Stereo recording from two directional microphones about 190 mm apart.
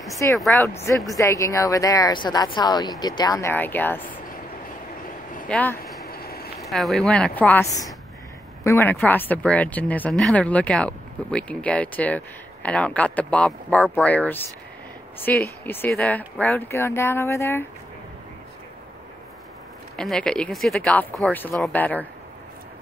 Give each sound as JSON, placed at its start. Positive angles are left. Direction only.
{"t": 0.1, "sound": "speech", "side_deg": 15}
{"t": 5.5, "sound": "speech", "side_deg": 5}
{"t": 6.0, "sound": "a sound", "side_deg": 55}
{"t": 6.6, "sound": "speech", "side_deg": 0}
{"t": 20.0, "sound": "speech", "side_deg": 5}